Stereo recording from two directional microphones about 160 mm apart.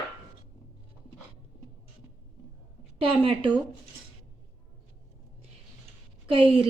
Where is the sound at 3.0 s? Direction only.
35° right (ahead or behind).